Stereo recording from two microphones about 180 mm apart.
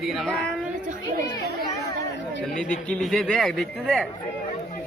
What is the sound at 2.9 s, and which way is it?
A man's voice, 5° left (ahead or behind).